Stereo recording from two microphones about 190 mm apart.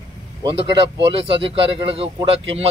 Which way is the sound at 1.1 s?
30° right (ahead or behind).